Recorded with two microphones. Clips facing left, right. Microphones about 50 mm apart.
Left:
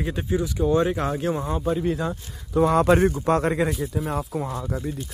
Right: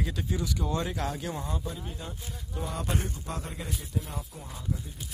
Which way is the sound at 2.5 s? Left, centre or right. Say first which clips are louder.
Left 16 dB; left.